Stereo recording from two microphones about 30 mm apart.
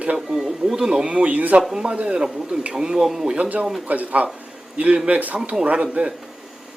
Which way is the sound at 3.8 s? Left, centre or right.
Right.